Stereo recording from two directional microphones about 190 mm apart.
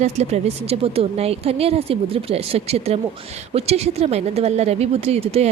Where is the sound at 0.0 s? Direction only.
35° right (ahead or behind).